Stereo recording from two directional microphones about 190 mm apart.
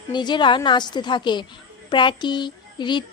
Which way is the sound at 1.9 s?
25° left (ahead or behind).